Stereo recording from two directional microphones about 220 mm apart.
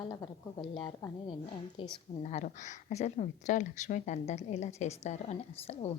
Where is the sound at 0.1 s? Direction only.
15° left (ahead or behind).